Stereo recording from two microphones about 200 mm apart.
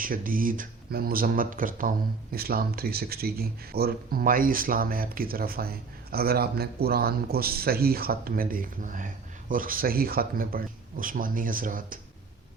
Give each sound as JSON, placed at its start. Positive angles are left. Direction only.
{"t": 0.0, "sound": "speech", "side_deg": -45}